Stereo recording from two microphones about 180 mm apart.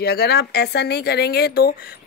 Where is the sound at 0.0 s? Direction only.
65° left (ahead or behind).